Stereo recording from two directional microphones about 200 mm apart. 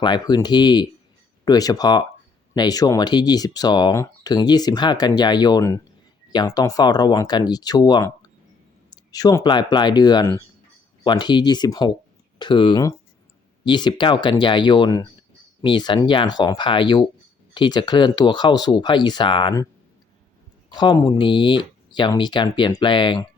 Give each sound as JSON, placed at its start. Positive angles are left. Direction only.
{"t": 0.0, "sound": "speech", "side_deg": 20}
{"t": 20.7, "sound": "speech", "side_deg": 20}